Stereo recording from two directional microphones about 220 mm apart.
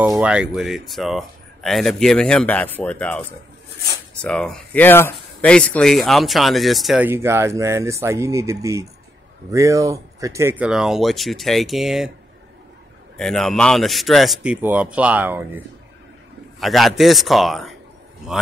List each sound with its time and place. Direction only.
0.0 s speech: 5° right (ahead or behind)
13.2 s speech: centre (ahead or behind)